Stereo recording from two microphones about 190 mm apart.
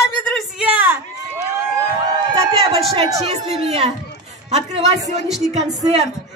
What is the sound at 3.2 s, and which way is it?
Speech, 35° right (ahead or behind).